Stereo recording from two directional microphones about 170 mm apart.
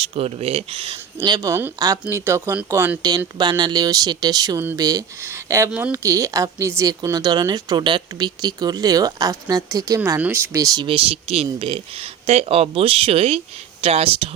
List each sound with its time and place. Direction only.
0.1 s speech: 35° right (ahead or behind)